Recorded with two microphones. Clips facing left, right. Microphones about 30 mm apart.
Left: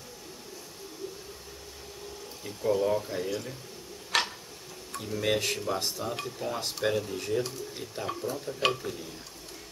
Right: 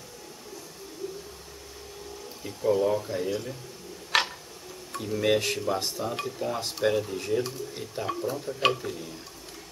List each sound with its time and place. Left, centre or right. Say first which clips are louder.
2.4 s speech: right 3 dB; centre
4.1 s tick-tock: right 3 dB; centre
4.9 s speech: right 4 dB; centre